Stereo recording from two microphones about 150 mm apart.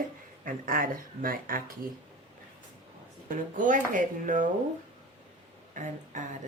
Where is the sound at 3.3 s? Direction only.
60° right (ahead or behind).